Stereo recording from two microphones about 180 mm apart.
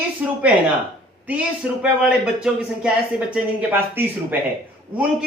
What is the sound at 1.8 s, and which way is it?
Speech, 5° right (ahead or behind).